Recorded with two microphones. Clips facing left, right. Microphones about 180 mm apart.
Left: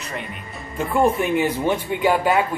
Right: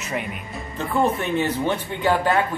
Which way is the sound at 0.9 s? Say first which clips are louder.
Left 3 dB; 10° left (ahead or behind).